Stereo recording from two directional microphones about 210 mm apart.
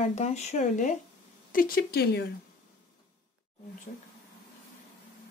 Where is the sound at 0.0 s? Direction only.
30° left (ahead or behind); by 2.2 s 50° left (ahead or behind).